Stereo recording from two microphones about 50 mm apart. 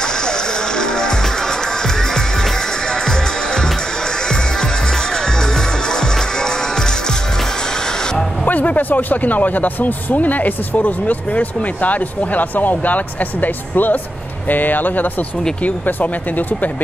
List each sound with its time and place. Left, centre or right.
0.0 s music: centre
8.5 s speech: left